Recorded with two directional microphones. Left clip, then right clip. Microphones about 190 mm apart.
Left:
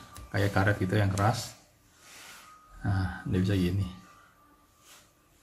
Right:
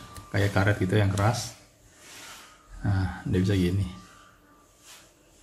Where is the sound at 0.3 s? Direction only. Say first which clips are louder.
Right 2 dB; centre (ahead or behind).